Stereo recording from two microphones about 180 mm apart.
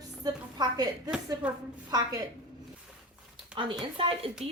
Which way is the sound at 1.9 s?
20° right (ahead or behind).